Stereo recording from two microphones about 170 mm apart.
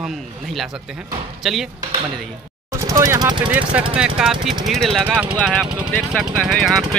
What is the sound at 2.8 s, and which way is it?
Speech, 20° right (ahead or behind).